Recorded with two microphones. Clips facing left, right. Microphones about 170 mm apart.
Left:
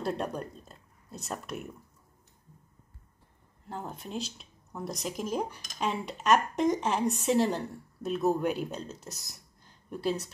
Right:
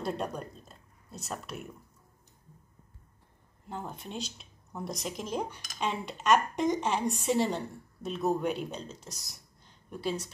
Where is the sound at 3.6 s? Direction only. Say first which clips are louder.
Left 1 dB; centre (ahead or behind).